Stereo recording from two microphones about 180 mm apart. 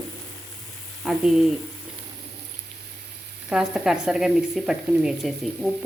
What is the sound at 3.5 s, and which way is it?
Speech, 5° right (ahead or behind).